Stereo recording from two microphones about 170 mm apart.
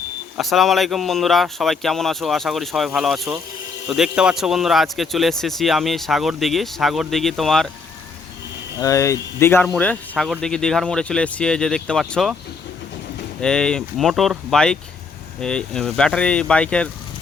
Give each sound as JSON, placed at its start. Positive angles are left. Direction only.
{"t": 0.3, "sound": "a man's voice", "side_deg": 0}
{"t": 8.8, "sound": "a man's voice", "side_deg": 20}
{"t": 13.4, "sound": "a man's voice", "side_deg": 5}